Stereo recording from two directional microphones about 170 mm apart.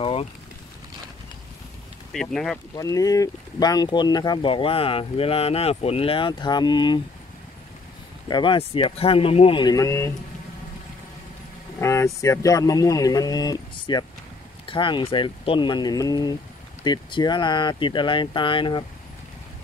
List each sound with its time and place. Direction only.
0.0 s vehicle: 35° left (ahead or behind)
2.1 s speech: 5° left (ahead or behind)
2.7 s speech: 20° left (ahead or behind)
8.3 s speech: 30° left (ahead or behind)
11.8 s speech: 15° left (ahead or behind)